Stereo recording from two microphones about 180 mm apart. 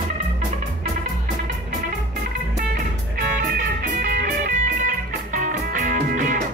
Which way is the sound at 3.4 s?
55° right (ahead or behind).